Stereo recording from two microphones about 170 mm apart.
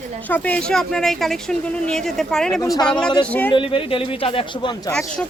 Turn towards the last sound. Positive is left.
turn(degrees=5)  # may be behind; listen again after turning